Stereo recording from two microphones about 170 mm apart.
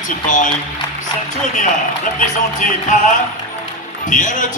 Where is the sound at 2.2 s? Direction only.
50° left (ahead or behind).